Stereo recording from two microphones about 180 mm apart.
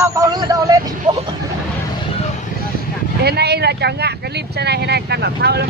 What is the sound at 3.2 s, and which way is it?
Speech, 65° right (ahead or behind).